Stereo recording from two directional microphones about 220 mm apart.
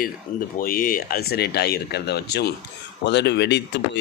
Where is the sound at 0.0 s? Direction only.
40° left (ahead or behind).